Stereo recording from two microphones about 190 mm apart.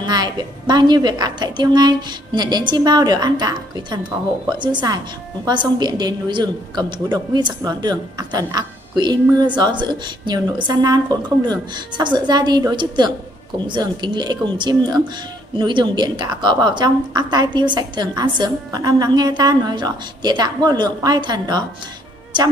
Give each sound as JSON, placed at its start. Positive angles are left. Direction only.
{"t": 0.0, "sound": "a woman's voice", "side_deg": -20}